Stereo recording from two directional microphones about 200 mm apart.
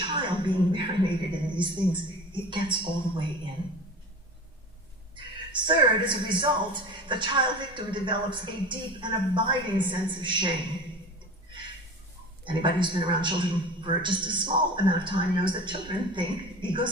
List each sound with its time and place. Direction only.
0.1 s a woman's voice: 25° right (ahead or behind)
5.1 s a woman's voice: 25° right (ahead or behind)
12.5 s a woman's voice: 25° right (ahead or behind)